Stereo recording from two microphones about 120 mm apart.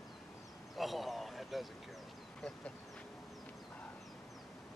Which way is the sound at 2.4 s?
5° left (ahead or behind).